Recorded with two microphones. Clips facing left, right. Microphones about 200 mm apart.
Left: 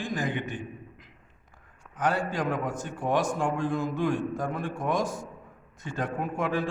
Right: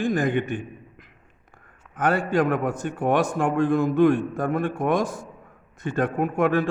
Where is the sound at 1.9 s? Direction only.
55° right (ahead or behind).